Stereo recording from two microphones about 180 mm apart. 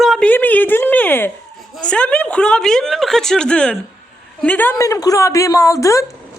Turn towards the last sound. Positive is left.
turn(degrees=15)  # may be behind; listen again after turning